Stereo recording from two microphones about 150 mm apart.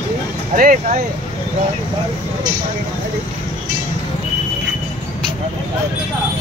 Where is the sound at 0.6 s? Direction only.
70° right (ahead or behind).